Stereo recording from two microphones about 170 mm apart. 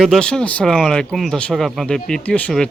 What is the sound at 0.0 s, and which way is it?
Speech, 5° left (ahead or behind).